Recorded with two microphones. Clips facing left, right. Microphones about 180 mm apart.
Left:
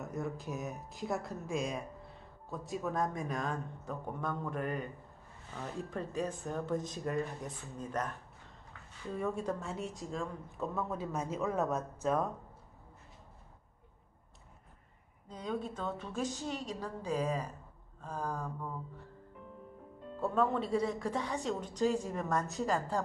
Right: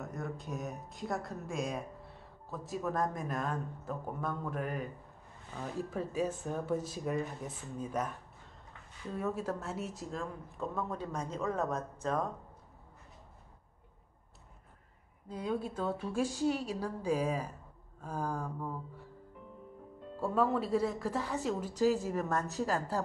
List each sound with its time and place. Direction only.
0.0 s a woman's voice: centre (ahead or behind)
9.1 s speech: 5° right (ahead or behind)
15.2 s a woman's voice: 5° right (ahead or behind)
20.2 s speech: 5° right (ahead or behind)